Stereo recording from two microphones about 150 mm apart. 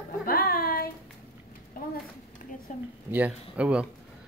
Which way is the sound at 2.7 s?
60° left (ahead or behind).